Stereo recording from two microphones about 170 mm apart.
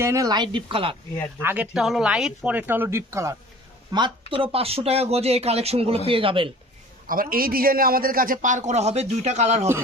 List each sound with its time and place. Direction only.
0.0 s speech: 20° right (ahead or behind)
1.4 s speech: 15° right (ahead or behind)
1.7 s speech: centre (ahead or behind); by 6.5 s 30° right (ahead or behind)
7.1 s a man's voice: 55° right (ahead or behind); by 9.6 s 40° right (ahead or behind)